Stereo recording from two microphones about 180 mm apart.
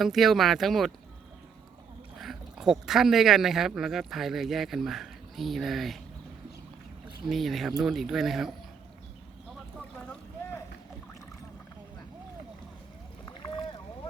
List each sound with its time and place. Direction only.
0.0 s speech: centre (ahead or behind)
2.2 s speech: centre (ahead or behind)
7.3 s speech: centre (ahead or behind)